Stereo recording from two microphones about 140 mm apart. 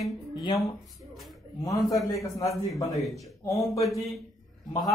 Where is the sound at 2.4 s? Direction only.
Centre (ahead or behind).